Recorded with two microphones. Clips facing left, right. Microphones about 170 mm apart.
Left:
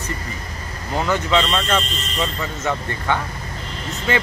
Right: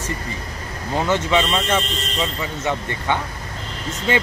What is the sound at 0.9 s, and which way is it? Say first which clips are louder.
Speech: even; 25° right (ahead or behind).